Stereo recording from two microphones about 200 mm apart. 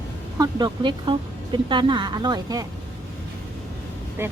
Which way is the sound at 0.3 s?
20° right (ahead or behind).